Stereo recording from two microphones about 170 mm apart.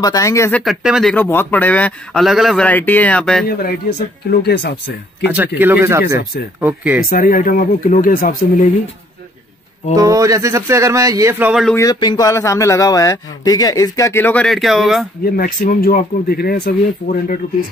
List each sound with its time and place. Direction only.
0.0 s a man's voice: 20° left (ahead or behind)
0.5 s speech: 5° left (ahead or behind)
1.1 s speech: 10° left (ahead or behind)
4.4 s speech: 75° left (ahead or behind)
5.6 s speech: 10° right (ahead or behind)
7.0 s speech: 55° left (ahead or behind)
9.9 s speech: 20° right (ahead or behind)
11.8 s a man's voice: 25° left (ahead or behind); by 15.0 s centre (ahead or behind)
15.2 s speech: 55° left (ahead or behind)